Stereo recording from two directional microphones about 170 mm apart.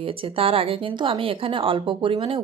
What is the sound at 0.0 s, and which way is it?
Speech, 30° right (ahead or behind).